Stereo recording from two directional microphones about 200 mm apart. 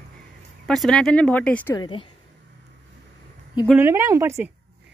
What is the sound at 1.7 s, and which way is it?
Speech, 25° left (ahead or behind).